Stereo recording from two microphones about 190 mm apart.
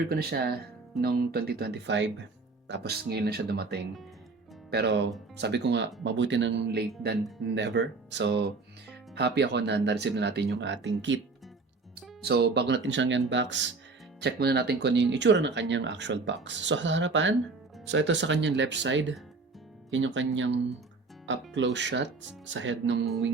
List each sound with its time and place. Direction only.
0.1 s speech: 55° right (ahead or behind); by 11.2 s 75° right (ahead or behind)
12.2 s speech: 60° right (ahead or behind)
14.2 s speech: 60° right (ahead or behind); by 23.0 s 75° right (ahead or behind)